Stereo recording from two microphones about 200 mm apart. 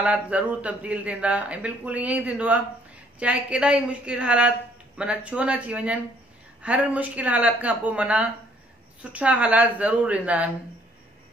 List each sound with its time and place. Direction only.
0.0 s a woman's voice: 5° right (ahead or behind)